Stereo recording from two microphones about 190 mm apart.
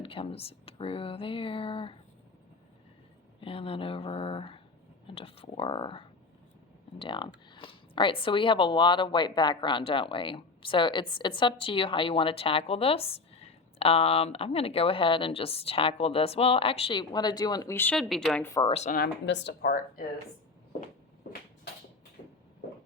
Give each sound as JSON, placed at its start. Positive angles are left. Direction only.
{"t": 0.0, "sound": "speech", "side_deg": 30}
{"t": 3.4, "sound": "speech", "side_deg": 30}
{"t": 18.4, "sound": "speech", "side_deg": 15}
{"t": 18.7, "sound": "speech", "side_deg": 35}
{"t": 18.9, "sound": "speech", "side_deg": 60}
{"t": 21.2, "sound": "a sound", "side_deg": 50}